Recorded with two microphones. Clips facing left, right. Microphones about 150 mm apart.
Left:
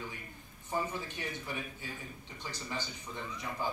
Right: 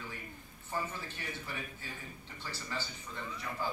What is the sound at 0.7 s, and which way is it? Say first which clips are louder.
A man's voice: left 3 dB; 15° left (ahead or behind).